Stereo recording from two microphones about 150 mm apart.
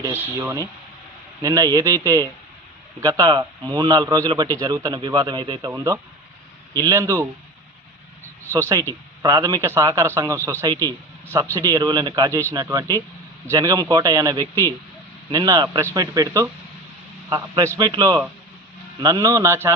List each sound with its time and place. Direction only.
0.0 s a man's voice: 15° right (ahead or behind)
8.5 s a man's voice: 20° right (ahead or behind)